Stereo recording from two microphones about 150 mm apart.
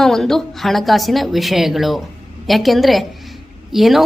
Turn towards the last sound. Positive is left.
turn(degrees=0)  # may be behind; listen again after turning